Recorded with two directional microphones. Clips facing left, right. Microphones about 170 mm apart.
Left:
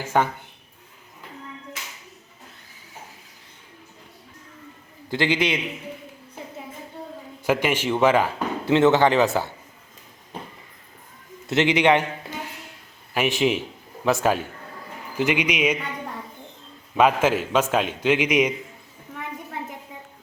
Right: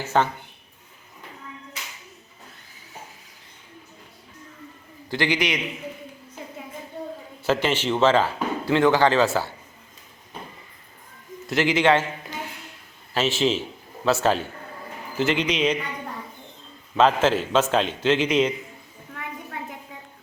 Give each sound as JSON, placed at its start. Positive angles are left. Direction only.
{"t": 0.0, "sound": "speech", "side_deg": 10}
{"t": 5.1, "sound": "a man's voice", "side_deg": 20}
{"t": 7.4, "sound": "speech", "side_deg": 15}
{"t": 11.4, "sound": "a man's voice", "side_deg": 20}
{"t": 13.1, "sound": "a man's voice", "side_deg": 15}
{"t": 17.0, "sound": "speech", "side_deg": 10}